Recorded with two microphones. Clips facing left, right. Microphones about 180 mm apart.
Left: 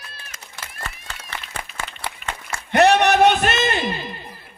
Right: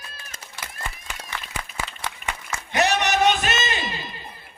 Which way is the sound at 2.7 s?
60° left (ahead or behind).